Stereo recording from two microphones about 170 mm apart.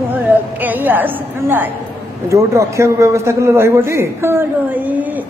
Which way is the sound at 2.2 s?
15° right (ahead or behind).